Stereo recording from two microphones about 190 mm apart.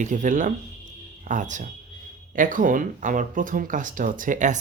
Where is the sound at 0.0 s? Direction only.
40° right (ahead or behind).